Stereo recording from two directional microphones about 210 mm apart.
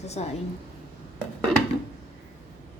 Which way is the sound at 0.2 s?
30° left (ahead or behind).